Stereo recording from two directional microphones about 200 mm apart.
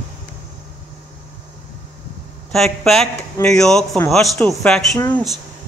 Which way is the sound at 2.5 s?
Centre (ahead or behind).